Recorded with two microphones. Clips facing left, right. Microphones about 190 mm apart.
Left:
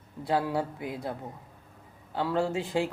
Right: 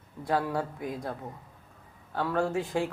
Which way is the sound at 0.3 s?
10° left (ahead or behind).